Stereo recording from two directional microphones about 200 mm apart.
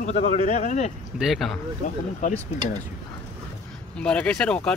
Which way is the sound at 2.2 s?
35° left (ahead or behind).